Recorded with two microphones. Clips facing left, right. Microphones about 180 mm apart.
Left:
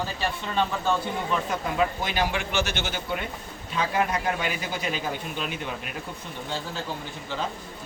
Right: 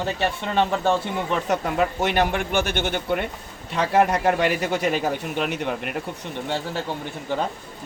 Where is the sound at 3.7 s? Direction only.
70° right (ahead or behind).